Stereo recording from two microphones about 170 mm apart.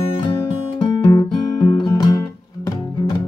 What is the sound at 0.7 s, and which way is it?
Music, 30° left (ahead or behind).